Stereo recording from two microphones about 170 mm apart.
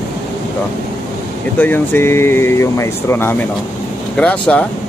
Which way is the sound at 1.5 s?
10° left (ahead or behind).